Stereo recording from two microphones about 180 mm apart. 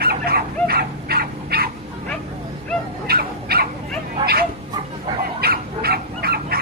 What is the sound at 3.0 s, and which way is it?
Dog, 60° right (ahead or behind).